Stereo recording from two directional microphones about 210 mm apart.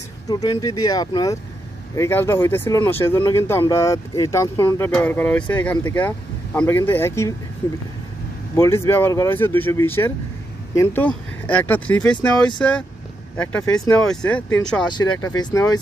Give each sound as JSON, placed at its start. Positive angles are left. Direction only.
{"t": 0.3, "sound": "speech", "side_deg": 20}
{"t": 8.5, "sound": "speech", "side_deg": 10}
{"t": 14.9, "sound": "speech", "side_deg": 20}